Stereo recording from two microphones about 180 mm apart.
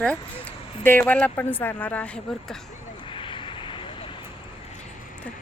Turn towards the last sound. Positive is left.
turn(degrees=30)  # may be behind; listen again after turning